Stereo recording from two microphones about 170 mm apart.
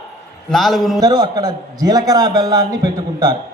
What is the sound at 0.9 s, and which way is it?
A man's voice, 25° right (ahead or behind).